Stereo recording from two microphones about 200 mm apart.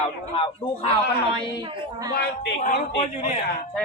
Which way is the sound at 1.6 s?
20° right (ahead or behind).